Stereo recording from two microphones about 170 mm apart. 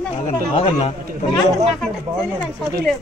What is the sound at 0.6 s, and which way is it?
Speech, 30° left (ahead or behind).